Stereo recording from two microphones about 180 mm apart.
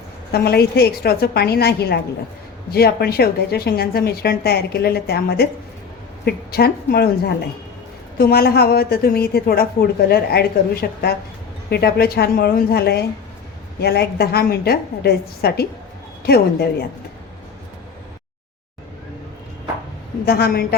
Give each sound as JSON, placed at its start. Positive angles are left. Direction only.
{"t": 0.3, "sound": "a woman's voice", "side_deg": 60}
{"t": 20.2, "sound": "a woman's voice", "side_deg": 60}